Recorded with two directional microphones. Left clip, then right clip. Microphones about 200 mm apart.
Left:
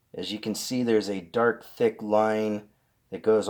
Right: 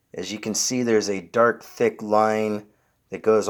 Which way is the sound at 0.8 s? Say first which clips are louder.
Right 2 dB; 30° right (ahead or behind).